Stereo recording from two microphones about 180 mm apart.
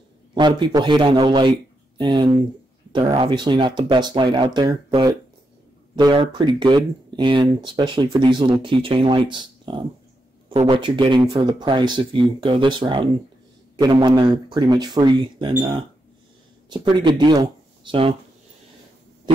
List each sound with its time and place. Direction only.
0.3 s speech: 25° right (ahead or behind)
16.6 s speech: 25° right (ahead or behind)